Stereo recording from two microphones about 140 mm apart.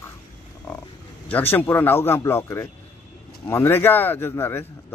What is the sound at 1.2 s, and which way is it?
Speech, 15° left (ahead or behind).